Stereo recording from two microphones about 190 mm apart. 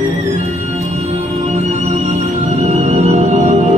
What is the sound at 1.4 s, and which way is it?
Music, 35° right (ahead or behind).